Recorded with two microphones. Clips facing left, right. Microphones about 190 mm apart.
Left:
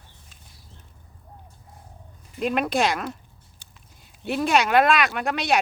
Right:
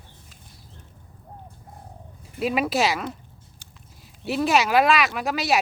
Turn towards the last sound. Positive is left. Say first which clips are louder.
# even
turn(degrees=0)  # may be behind; listen again after turning